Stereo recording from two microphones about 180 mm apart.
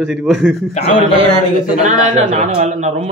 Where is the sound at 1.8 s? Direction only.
40° right (ahead or behind).